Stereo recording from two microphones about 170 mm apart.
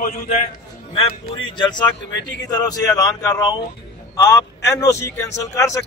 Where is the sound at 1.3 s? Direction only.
25° left (ahead or behind).